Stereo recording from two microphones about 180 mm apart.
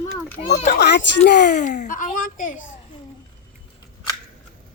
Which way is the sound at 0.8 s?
70° left (ahead or behind).